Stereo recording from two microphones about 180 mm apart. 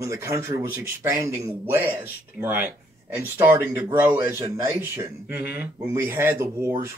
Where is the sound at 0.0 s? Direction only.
15° right (ahead or behind).